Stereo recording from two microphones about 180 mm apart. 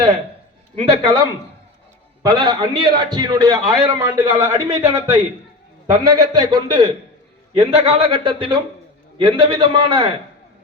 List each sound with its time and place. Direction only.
0.8 s a man's voice: 25° right (ahead or behind)